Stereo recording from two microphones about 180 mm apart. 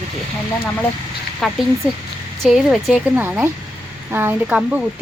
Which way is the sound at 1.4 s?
Centre (ahead or behind).